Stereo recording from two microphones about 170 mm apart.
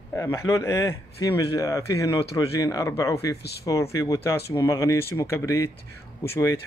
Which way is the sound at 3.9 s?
20° left (ahead or behind).